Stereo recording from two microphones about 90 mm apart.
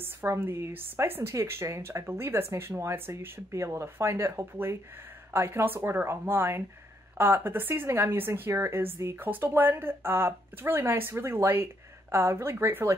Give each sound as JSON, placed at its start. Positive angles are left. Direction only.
{"t": 0.0, "sound": "a woman's voice", "side_deg": -25}